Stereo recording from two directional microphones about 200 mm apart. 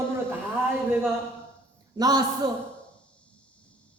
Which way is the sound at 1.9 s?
20° right (ahead or behind).